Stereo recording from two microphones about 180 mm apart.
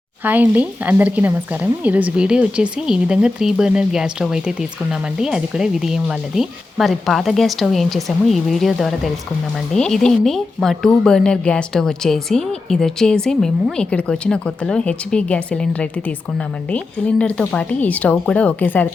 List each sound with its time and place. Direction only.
0.3 s a woman's voice: 10° right (ahead or behind); by 18.9 s 10° left (ahead or behind)